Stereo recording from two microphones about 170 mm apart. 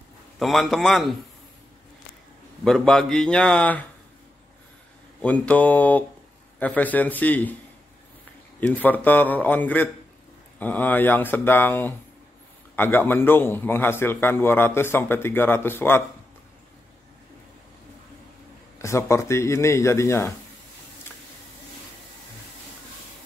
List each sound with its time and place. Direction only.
0.4 s speech: centre (ahead or behind)
2.6 s speech: 5° left (ahead or behind)
5.2 s a man's voice: 10° left (ahead or behind)
8.5 s a man's voice: 10° left (ahead or behind)
18.8 s a man's voice: 15° left (ahead or behind)